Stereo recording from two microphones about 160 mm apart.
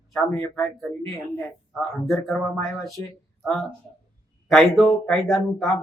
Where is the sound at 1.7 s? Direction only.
Centre (ahead or behind).